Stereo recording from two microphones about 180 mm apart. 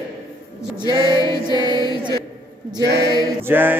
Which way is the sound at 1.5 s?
25° right (ahead or behind).